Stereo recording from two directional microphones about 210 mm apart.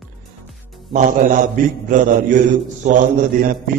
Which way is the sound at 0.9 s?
35° right (ahead or behind).